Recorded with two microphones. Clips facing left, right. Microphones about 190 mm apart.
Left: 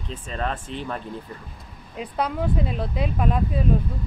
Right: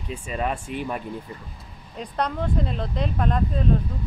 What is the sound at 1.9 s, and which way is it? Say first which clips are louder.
Speech: left 1 dB; 5° left (ahead or behind).